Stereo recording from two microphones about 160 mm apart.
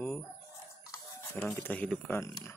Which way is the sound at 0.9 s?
20° left (ahead or behind).